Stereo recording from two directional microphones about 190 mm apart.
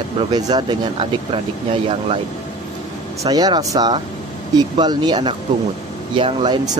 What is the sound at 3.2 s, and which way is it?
Speech, 20° right (ahead or behind).